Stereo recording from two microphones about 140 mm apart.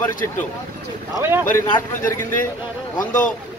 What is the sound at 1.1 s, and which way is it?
Speech, 15° right (ahead or behind).